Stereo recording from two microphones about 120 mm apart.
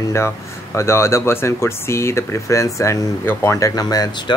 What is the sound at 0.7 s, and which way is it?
Speech, 20° left (ahead or behind).